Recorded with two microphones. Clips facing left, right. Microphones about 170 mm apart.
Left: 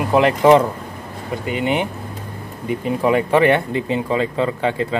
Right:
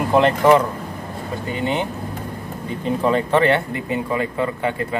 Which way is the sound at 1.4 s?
15° left (ahead or behind).